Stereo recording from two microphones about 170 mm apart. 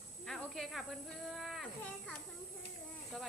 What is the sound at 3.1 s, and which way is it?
Speech, centre (ahead or behind).